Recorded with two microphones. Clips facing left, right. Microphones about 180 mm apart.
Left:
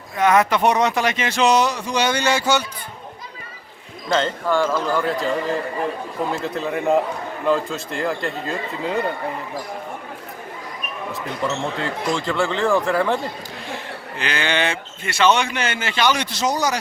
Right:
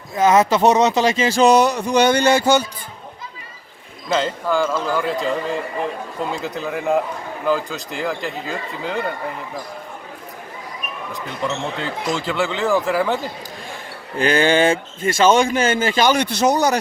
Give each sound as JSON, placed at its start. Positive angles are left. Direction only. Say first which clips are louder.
{"t": 0.2, "sound": "speech", "louder": "right 2 dB", "side_deg": -25}
{"t": 1.5, "sound": "speech", "louder": "right 3 dB", "side_deg": -55}
{"t": 4.1, "sound": "a man's voice", "louder": "even", "side_deg": 0}
{"t": 11.8, "sound": "a man's voice", "louder": "even", "side_deg": 0}
{"t": 14.2, "sound": "a man's voice", "louder": "right 7 dB", "side_deg": -45}